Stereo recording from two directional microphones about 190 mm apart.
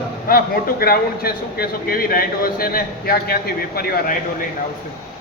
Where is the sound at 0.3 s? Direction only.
50° left (ahead or behind).